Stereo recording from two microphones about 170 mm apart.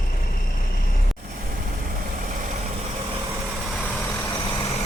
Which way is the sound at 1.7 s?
55° right (ahead or behind).